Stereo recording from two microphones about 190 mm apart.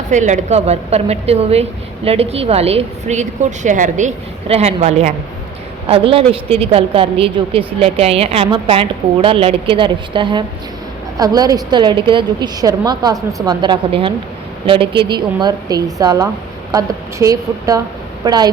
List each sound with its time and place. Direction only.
0.1 s a woman's voice: 40° right (ahead or behind); by 18.4 s 20° right (ahead or behind)